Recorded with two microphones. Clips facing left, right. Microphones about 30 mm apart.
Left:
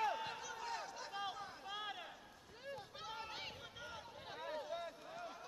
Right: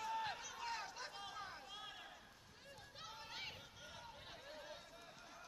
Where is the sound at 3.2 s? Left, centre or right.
Centre.